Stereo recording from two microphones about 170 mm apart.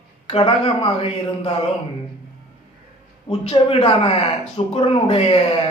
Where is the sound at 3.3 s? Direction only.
35° left (ahead or behind).